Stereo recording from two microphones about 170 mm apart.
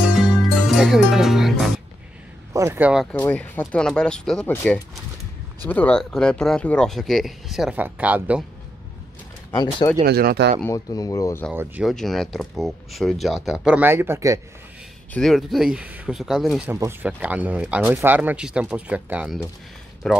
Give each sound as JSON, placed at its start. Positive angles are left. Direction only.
{"t": 0.1, "sound": "music", "side_deg": 0}
{"t": 2.5, "sound": "speech", "side_deg": -15}
{"t": 2.9, "sound": "speech", "side_deg": 0}
{"t": 3.2, "sound": "speech", "side_deg": 10}
{"t": 9.5, "sound": "speech", "side_deg": 20}
{"t": 10.0, "sound": "speech", "side_deg": -70}
{"t": 10.6, "sound": "speech", "side_deg": 20}
{"t": 11.8, "sound": "speech", "side_deg": 0}
{"t": 15.1, "sound": "speech", "side_deg": 0}
{"t": 16.6, "sound": "speech", "side_deg": -15}